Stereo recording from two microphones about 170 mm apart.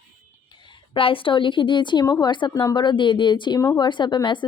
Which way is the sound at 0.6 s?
30° left (ahead or behind).